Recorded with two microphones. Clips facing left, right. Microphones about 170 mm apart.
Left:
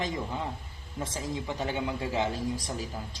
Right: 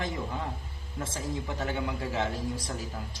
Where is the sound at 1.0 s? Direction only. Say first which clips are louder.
Even; 15° left (ahead or behind).